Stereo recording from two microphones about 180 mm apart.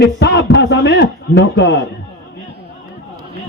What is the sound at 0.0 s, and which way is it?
A man's voice, 70° left (ahead or behind).